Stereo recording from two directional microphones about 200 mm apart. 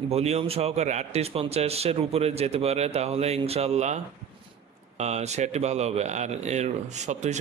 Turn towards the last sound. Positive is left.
turn(degrees=-35)  # may be behind; listen again after turning